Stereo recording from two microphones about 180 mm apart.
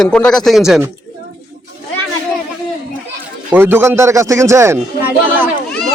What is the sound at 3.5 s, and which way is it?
A man's voice, 10° right (ahead or behind).